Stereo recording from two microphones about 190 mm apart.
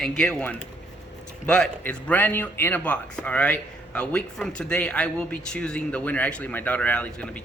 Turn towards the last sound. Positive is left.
turn(degrees=5)  # may be behind; listen again after turning